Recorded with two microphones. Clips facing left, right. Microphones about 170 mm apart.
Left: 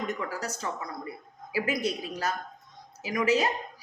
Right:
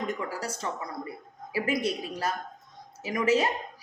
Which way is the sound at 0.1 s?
30° right (ahead or behind).